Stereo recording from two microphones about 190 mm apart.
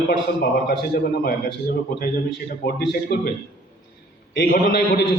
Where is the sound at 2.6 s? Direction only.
55° left (ahead or behind).